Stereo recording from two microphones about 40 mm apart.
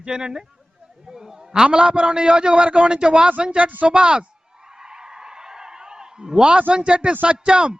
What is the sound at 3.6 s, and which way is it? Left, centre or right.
Speech, right.